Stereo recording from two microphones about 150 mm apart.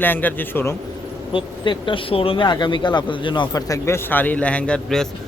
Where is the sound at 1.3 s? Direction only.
35° left (ahead or behind).